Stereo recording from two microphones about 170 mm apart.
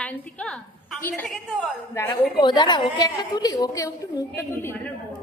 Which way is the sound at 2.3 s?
25° left (ahead or behind).